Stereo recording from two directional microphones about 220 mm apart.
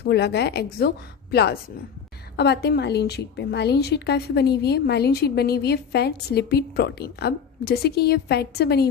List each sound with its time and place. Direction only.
0.0 s a woman's voice: 50° left (ahead or behind)